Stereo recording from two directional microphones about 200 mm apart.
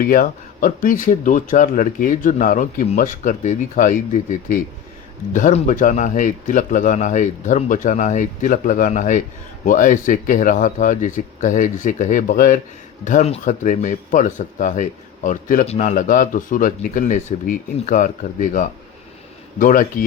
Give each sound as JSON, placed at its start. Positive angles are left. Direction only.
{"t": 0.0, "sound": "a man's voice", "side_deg": 45}